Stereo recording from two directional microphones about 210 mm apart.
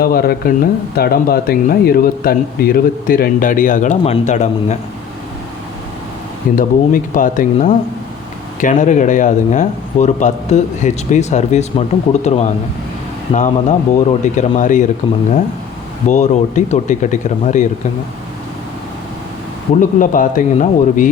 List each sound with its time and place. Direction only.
0.0 s speech: 45° left (ahead or behind)
6.6 s speech: 40° left (ahead or behind)
16.0 s speech: 35° left (ahead or behind)
19.8 s speech: 40° left (ahead or behind)